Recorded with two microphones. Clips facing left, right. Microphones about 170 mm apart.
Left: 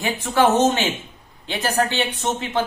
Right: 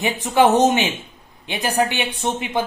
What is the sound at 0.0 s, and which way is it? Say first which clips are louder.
A woman's voice: right 2 dB; 15° right (ahead or behind).